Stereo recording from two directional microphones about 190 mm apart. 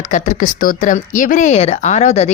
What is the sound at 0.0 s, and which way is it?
Speech, 40° left (ahead or behind).